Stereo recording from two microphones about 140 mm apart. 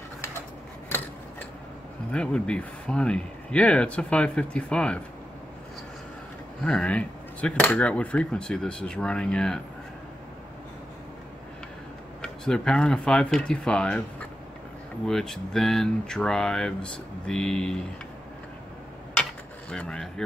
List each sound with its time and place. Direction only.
2.1 s speech: 5° left (ahead or behind)
6.6 s speech: 10° left (ahead or behind)
12.2 s speech: 5° left (ahead or behind)
15.0 s speech: 5° left (ahead or behind)
19.7 s speech: 5° left (ahead or behind)